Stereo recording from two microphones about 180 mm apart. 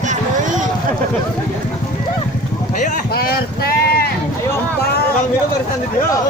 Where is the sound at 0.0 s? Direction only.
45° right (ahead or behind).